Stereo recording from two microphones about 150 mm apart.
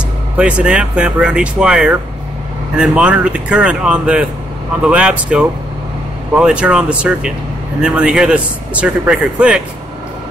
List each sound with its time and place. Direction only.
0.4 s a man's voice: 5° right (ahead or behind)